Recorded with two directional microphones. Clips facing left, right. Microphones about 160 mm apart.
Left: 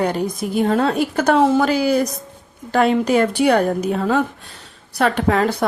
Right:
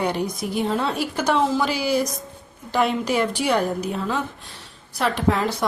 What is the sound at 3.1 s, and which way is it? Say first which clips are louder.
A woman's voice: left 6 dB; 60° left (ahead or behind).